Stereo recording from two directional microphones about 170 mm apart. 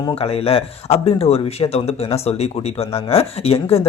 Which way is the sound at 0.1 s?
35° left (ahead or behind).